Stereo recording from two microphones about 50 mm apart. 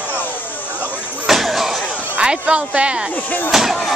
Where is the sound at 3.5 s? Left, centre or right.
Centre.